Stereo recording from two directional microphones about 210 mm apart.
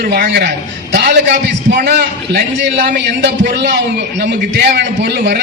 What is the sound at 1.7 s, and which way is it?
A man's voice, 50° right (ahead or behind).